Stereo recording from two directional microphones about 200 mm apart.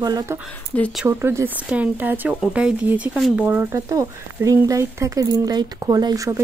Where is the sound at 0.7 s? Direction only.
5° left (ahead or behind).